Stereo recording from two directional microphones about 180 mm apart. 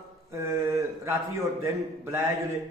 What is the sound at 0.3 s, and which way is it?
Mantra, 15° right (ahead or behind).